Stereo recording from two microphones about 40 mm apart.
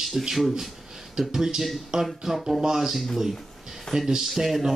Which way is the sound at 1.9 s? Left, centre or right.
Centre.